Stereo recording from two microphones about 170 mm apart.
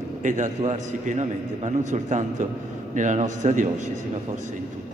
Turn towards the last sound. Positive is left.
turn(degrees=-50)  # may be behind; listen again after turning